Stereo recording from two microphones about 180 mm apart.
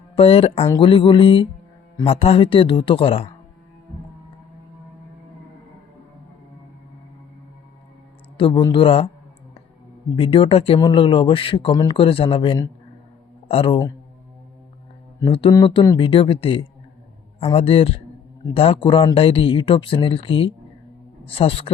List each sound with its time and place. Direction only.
0.2 s speech: 35° left (ahead or behind)
8.4 s speech: 30° left (ahead or behind)
10.2 s speech: 30° left (ahead or behind)
15.2 s speech: 25° left (ahead or behind)